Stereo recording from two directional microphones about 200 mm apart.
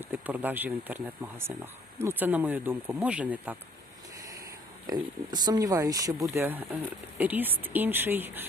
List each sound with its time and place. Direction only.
0.0 s speech: 10° right (ahead or behind)
4.9 s speech: 20° right (ahead or behind)